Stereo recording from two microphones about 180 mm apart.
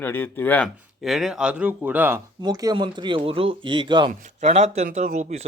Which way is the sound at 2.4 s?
20° right (ahead or behind).